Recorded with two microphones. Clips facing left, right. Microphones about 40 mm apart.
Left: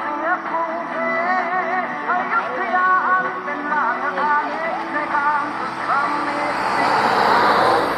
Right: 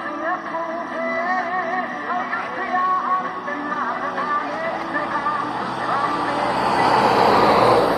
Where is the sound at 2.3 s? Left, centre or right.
Left.